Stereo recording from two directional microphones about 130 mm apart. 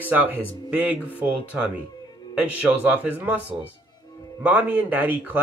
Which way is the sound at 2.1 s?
35° left (ahead or behind).